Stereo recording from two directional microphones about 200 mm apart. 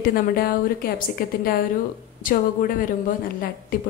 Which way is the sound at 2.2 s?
45° left (ahead or behind).